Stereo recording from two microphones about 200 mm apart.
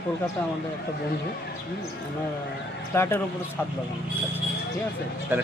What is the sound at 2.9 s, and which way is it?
Speech, 10° left (ahead or behind).